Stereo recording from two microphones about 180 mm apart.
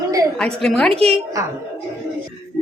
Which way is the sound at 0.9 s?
35° right (ahead or behind).